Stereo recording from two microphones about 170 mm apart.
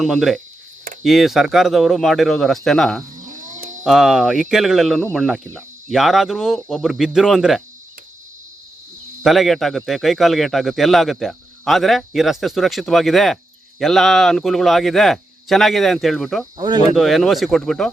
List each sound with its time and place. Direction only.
0.0 s a man's voice: centre (ahead or behind)
3.2 s cat: 50° right (ahead or behind)
3.8 s a man's voice: centre (ahead or behind)
9.2 s a man's voice: centre (ahead or behind)
16.6 s speech: 25° right (ahead or behind)
16.9 s a man's voice: centre (ahead or behind)